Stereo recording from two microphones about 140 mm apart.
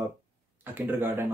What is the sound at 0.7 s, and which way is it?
Speech, 15° right (ahead or behind).